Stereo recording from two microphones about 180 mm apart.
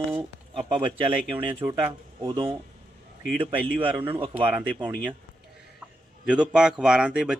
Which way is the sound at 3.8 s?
30° right (ahead or behind).